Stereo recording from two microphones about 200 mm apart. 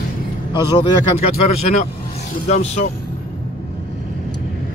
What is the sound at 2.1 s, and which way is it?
Speech, 35° left (ahead or behind).